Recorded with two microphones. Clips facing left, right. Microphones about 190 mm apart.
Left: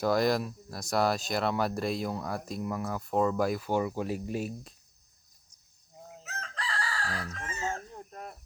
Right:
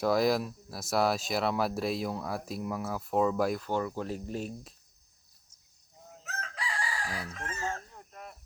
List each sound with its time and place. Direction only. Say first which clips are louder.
0.0 s speech: even; centre (ahead or behind)
6.2 s chicken: right 1 dB; 5° right (ahead or behind)
7.4 s chicken: even; 15° left (ahead or behind)
7.7 s chicken: left 2 dB; 35° left (ahead or behind)